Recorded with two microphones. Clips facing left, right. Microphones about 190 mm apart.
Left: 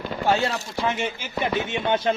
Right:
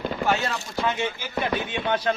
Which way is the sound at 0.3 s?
25° left (ahead or behind).